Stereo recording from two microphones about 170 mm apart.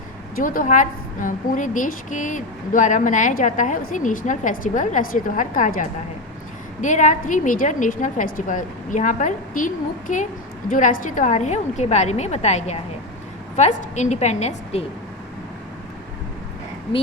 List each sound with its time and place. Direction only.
0.3 s a woman's voice: 55° left (ahead or behind)